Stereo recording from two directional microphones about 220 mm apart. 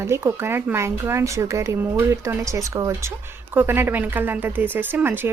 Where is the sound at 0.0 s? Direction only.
10° right (ahead or behind).